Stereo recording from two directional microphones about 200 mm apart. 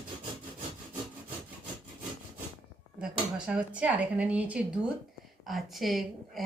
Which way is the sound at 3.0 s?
5° right (ahead or behind).